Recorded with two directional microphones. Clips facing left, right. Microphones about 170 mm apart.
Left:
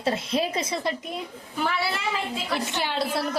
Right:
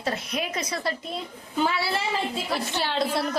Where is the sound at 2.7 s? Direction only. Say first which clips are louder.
Right 1 dB; 15° left (ahead or behind).